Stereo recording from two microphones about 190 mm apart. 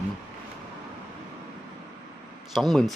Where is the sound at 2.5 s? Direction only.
Centre (ahead or behind).